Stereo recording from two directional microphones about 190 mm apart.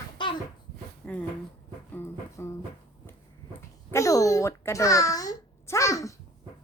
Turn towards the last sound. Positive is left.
turn(degrees=15)  # may be behind; listen again after turning